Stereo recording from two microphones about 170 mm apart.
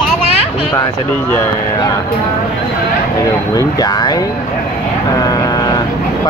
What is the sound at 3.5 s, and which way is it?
Speech, 20° left (ahead or behind).